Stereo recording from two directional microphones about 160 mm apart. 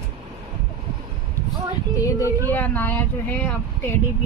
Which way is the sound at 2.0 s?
20° left (ahead or behind).